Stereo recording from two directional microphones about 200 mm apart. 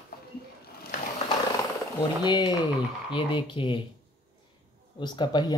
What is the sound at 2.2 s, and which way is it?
Speech, 20° left (ahead or behind).